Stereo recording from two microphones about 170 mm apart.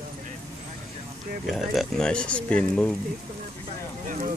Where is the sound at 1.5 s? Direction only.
5° left (ahead or behind).